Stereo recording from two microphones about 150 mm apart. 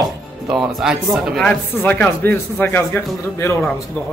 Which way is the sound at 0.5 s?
Centre (ahead or behind).